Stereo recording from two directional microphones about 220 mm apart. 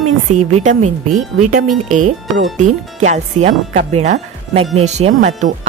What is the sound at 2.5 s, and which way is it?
Speech, 35° right (ahead or behind).